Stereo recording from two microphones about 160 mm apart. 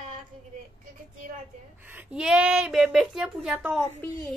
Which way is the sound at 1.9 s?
10° right (ahead or behind).